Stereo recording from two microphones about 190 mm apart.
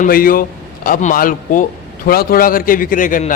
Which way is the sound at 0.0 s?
50° left (ahead or behind).